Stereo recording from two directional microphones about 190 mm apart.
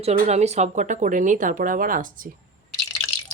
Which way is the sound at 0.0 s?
35° right (ahead or behind).